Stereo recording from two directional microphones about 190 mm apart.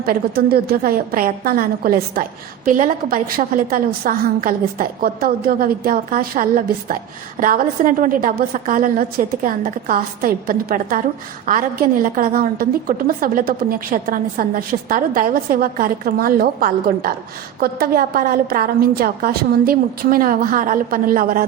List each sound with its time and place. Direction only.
0.0 s a woman's voice: 55° right (ahead or behind)